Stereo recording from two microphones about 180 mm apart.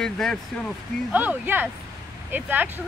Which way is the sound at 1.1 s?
10° right (ahead or behind).